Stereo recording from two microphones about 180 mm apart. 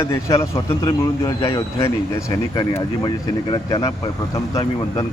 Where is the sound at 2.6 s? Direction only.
20° left (ahead or behind).